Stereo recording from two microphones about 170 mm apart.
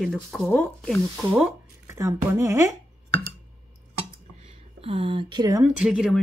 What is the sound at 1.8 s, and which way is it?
Speech, 15° right (ahead or behind).